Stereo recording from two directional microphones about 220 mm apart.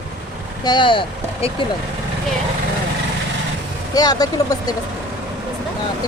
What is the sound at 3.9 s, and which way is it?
Speech, 15° left (ahead or behind).